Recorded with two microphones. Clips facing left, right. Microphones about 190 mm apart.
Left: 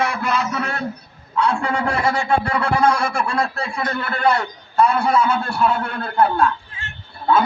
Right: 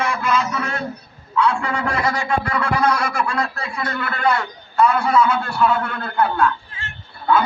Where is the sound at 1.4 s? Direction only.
30° left (ahead or behind).